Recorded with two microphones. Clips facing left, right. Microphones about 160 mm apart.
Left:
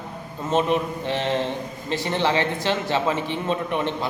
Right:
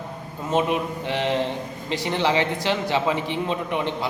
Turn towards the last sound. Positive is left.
turn(degrees=-15)  # may be behind; listen again after turning